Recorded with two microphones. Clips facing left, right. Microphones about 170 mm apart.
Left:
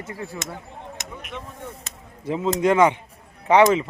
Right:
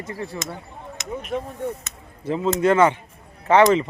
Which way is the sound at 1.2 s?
40° right (ahead or behind).